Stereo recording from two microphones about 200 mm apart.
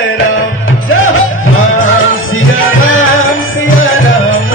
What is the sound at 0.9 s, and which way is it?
Music, 85° left.